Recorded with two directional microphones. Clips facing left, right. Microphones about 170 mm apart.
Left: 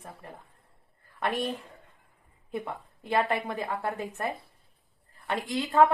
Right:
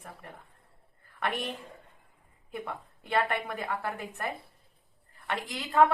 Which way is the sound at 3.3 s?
25° left (ahead or behind).